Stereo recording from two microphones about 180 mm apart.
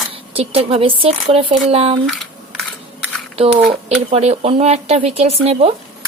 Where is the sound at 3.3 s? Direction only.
35° right (ahead or behind).